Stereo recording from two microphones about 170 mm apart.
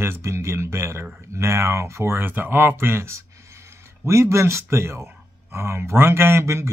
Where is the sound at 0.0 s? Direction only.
15° right (ahead or behind).